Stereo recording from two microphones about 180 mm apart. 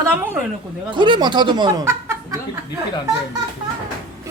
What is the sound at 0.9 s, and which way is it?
Speech, 25° right (ahead or behind).